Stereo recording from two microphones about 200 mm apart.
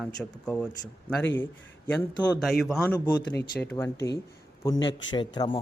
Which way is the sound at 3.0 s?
20° left (ahead or behind).